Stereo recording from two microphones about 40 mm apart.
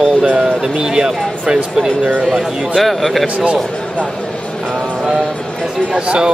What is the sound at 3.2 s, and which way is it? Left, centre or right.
Speech, right.